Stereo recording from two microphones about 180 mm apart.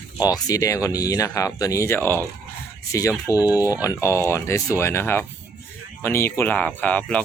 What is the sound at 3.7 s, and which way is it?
Speech, 15° left (ahead or behind).